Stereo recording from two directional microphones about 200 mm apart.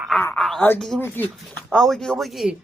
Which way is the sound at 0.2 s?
5° left (ahead or behind).